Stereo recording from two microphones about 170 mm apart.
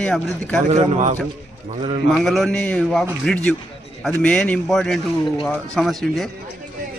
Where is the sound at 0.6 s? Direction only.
40° right (ahead or behind).